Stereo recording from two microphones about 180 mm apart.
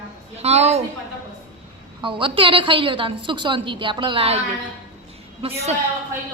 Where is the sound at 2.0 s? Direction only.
30° right (ahead or behind).